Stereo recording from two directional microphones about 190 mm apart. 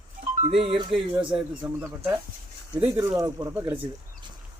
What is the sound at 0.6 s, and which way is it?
Speech, 30° right (ahead or behind).